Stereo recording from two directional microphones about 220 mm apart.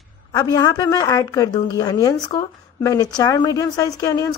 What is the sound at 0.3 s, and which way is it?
A woman's voice, 20° left (ahead or behind).